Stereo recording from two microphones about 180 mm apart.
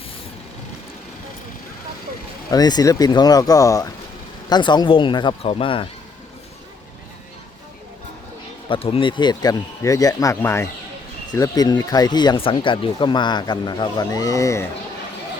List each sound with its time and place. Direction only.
2.5 s speech: 20° left (ahead or behind)
8.7 s speech: 30° left (ahead or behind)